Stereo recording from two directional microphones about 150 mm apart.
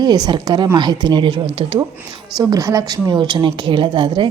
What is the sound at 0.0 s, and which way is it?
A woman's voice, 25° right (ahead or behind).